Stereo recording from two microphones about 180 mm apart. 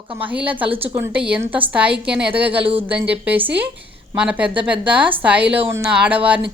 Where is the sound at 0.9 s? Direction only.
15° right (ahead or behind).